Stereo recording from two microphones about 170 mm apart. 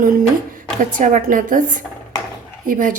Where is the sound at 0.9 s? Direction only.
50° right (ahead or behind).